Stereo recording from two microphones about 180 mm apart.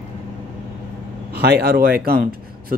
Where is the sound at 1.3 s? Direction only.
65° right (ahead or behind).